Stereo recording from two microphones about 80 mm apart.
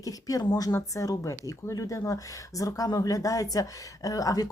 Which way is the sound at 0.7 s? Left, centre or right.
Left.